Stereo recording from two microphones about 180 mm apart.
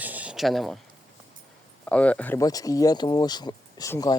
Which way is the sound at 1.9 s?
5° left (ahead or behind).